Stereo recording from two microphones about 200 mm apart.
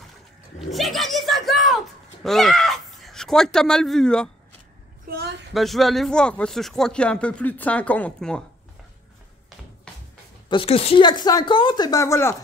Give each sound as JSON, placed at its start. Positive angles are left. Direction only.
{"t": 0.6, "sound": "speech", "side_deg": 0}
{"t": 5.0, "sound": "a sound", "side_deg": -50}
{"t": 5.5, "sound": "speech", "side_deg": 0}
{"t": 10.5, "sound": "a woman's voice", "side_deg": 30}